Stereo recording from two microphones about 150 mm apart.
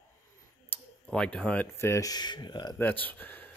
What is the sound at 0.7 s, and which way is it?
Speech, 5° left (ahead or behind).